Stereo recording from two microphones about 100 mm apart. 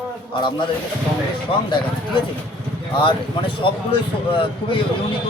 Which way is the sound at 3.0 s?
60° left (ahead or behind).